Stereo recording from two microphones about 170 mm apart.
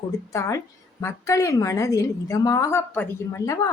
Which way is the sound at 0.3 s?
15° left (ahead or behind).